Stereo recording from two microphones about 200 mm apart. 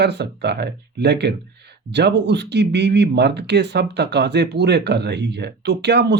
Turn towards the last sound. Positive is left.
turn(degrees=-55)  # may be behind; listen again after turning